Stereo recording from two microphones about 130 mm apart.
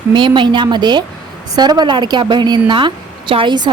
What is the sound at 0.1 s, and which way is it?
A woman's voice, 40° right (ahead or behind).